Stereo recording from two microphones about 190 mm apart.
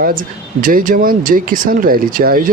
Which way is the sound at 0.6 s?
45° right (ahead or behind).